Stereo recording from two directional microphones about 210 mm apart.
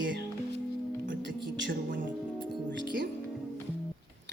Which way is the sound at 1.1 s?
60° right (ahead or behind).